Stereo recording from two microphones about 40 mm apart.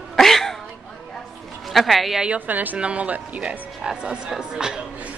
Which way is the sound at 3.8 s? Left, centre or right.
Centre.